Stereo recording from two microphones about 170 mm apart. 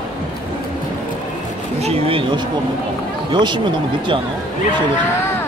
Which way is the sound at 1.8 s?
35° right (ahead or behind).